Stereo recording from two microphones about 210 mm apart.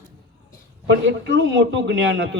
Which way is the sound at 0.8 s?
60° right (ahead or behind).